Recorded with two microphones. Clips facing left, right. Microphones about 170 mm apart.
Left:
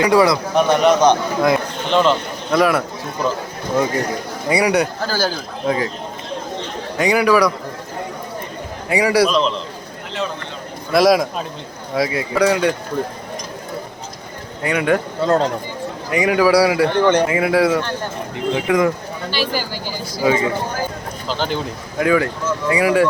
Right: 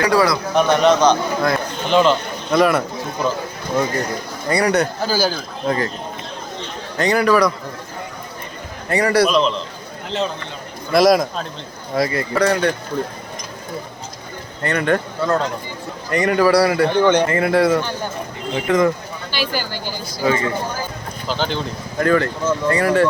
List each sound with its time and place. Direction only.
0.0 s a man's voice: 20° left (ahead or behind)
0.5 s a man's voice: 5° left (ahead or behind)
1.0 s a man's voice: 20° left (ahead or behind)
1.9 s speech: centre (ahead or behind)
4.4 s a man's voice: 10° left (ahead or behind)
5.0 s a man's voice: 5° right (ahead or behind)
6.9 s a man's voice: 10° left (ahead or behind)
8.9 s a man's voice: 10° left (ahead or behind)
10.9 s a man's voice: 5° left (ahead or behind)
14.6 s a man's voice: 5° left (ahead or behind)
15.3 s speech: 35° left (ahead or behind)
16.0 s a man's voice: 5° left (ahead or behind)